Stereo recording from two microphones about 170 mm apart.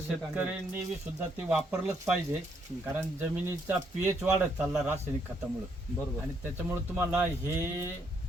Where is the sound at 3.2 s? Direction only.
15° right (ahead or behind).